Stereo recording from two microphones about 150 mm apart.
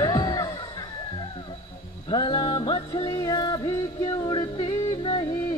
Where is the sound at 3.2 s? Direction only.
25° left (ahead or behind).